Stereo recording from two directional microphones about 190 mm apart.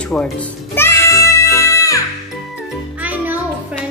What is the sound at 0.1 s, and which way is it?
Music, 5° left (ahead or behind).